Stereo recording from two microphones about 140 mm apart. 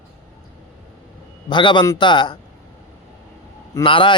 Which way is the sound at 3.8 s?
35° left (ahead or behind).